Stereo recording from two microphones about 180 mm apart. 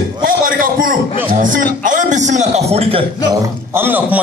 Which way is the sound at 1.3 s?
45° right (ahead or behind).